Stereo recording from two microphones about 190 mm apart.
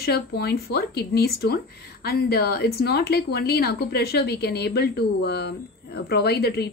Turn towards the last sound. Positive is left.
turn(degrees=55)  # may be behind; listen again after turning